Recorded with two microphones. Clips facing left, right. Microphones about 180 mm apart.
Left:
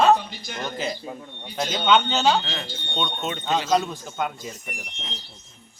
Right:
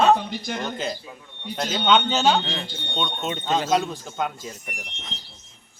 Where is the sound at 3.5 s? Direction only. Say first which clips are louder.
Even; centre (ahead or behind).